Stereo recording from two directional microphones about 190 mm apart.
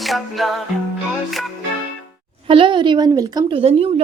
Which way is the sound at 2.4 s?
25° right (ahead or behind).